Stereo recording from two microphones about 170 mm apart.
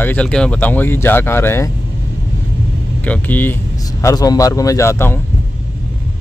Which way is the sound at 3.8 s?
20° left (ahead or behind).